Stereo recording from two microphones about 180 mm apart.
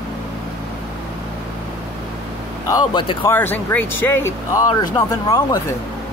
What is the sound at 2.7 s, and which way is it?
Speech, 25° left (ahead or behind).